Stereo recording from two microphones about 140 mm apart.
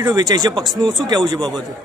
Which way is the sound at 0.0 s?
30° right (ahead or behind).